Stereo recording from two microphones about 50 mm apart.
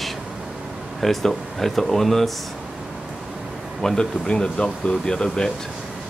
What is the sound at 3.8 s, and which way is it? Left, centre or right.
Speech, centre.